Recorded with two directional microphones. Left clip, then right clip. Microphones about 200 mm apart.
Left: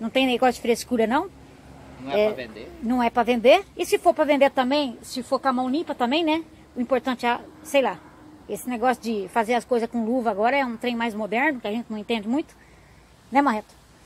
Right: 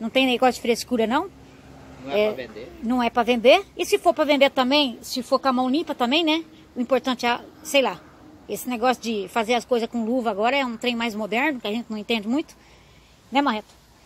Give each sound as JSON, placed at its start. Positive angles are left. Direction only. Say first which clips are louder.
{"t": 0.0, "sound": "speech", "louder": "right 1 dB", "side_deg": -15}
{"t": 2.3, "sound": "speech", "louder": "right 1 dB", "side_deg": 50}
{"t": 2.9, "sound": "speech", "louder": "even", "side_deg": -10}
{"t": 13.3, "sound": "speech", "louder": "left 1 dB", "side_deg": 0}